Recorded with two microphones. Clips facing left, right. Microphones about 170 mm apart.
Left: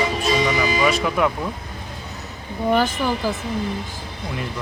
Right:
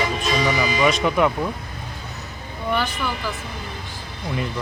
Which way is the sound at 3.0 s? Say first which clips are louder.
Left 5 dB; 40° left (ahead or behind).